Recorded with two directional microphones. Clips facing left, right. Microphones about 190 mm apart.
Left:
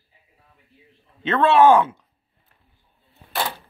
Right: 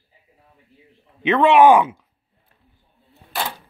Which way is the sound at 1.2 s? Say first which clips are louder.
Right 2 dB; 15° right (ahead or behind).